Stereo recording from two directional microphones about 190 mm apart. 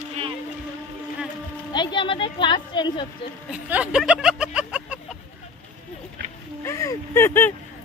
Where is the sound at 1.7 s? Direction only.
25° left (ahead or behind).